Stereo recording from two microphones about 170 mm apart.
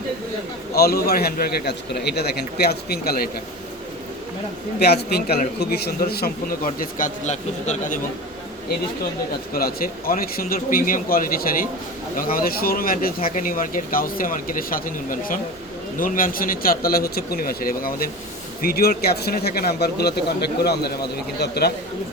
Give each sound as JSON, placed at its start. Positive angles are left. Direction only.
{"t": 0.8, "sound": "speech", "side_deg": 65}
{"t": 4.8, "sound": "speech", "side_deg": 70}
{"t": 9.6, "sound": "speech", "side_deg": 60}